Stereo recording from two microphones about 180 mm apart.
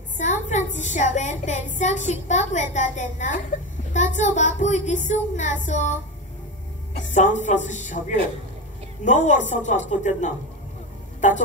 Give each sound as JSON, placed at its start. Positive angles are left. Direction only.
{"t": 0.2, "sound": "a woman's voice", "side_deg": 40}
{"t": 7.0, "sound": "speech", "side_deg": 45}